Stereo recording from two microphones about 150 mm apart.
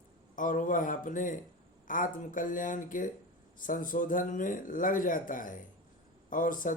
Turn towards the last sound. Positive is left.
turn(degrees=65)  # may be behind; listen again after turning